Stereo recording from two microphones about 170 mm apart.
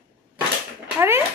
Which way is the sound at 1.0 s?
15° right (ahead or behind).